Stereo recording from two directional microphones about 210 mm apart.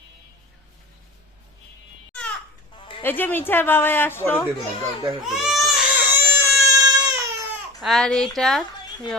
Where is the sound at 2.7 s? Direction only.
25° left (ahead or behind).